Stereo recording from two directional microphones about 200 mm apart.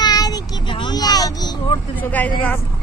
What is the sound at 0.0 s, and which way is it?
Child singing, 20° left (ahead or behind).